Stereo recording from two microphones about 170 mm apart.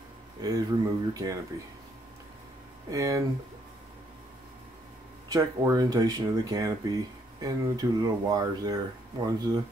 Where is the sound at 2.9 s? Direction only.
20° right (ahead or behind).